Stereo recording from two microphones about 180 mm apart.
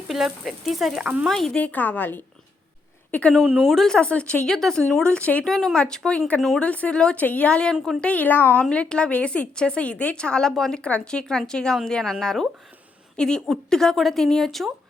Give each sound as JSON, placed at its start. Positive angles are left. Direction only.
{"t": 0.4, "sound": "a woman's voice", "side_deg": 0}